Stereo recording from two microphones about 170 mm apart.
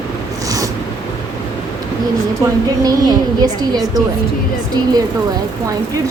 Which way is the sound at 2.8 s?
25° right (ahead or behind).